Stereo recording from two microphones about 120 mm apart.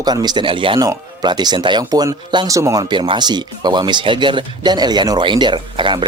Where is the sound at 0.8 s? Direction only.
35° right (ahead or behind).